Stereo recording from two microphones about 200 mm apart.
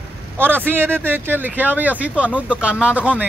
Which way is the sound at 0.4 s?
10° right (ahead or behind).